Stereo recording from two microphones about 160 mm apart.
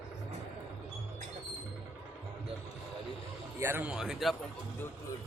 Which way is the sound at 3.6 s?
10° right (ahead or behind).